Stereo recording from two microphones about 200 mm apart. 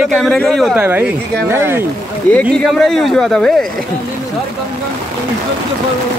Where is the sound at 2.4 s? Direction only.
Centre (ahead or behind).